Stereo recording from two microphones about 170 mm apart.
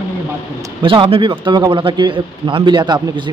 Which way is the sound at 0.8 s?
30° right (ahead or behind).